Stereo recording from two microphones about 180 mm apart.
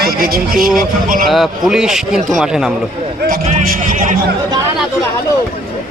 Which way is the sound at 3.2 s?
50° right (ahead or behind).